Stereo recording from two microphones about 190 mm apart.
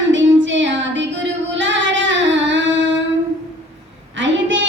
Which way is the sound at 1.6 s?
75° right (ahead or behind).